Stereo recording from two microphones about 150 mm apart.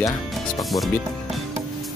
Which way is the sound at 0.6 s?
Centre (ahead or behind).